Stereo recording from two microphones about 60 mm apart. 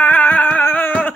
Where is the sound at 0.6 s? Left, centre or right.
Left.